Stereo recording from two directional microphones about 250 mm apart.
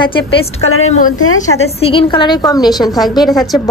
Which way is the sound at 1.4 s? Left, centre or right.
Left.